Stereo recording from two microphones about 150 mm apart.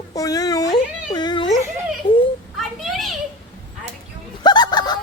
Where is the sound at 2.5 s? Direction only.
Centre (ahead or behind).